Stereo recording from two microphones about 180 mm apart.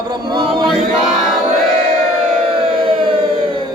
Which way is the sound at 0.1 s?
25° right (ahead or behind).